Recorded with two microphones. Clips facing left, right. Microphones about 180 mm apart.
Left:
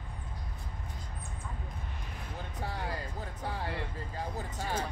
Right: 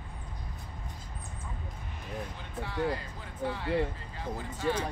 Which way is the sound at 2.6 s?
40° left (ahead or behind).